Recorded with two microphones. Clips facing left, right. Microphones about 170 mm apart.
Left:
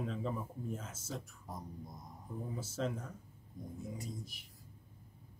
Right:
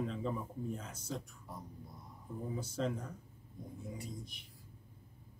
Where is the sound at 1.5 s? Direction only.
45° left (ahead or behind).